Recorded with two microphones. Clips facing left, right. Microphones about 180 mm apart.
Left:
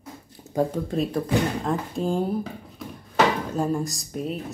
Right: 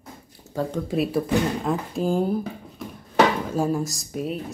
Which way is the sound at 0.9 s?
5° right (ahead or behind).